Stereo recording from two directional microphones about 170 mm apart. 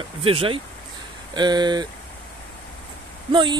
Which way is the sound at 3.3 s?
30° right (ahead or behind).